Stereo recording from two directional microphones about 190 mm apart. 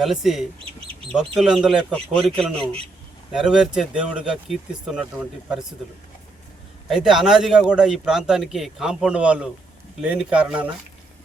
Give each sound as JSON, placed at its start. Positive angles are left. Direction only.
{"t": 0.0, "sound": "a man's voice", "side_deg": 0}
{"t": 0.6, "sound": "speech", "side_deg": -30}
{"t": 1.4, "sound": "a man's voice", "side_deg": 0}
{"t": 6.8, "sound": "a man's voice", "side_deg": 0}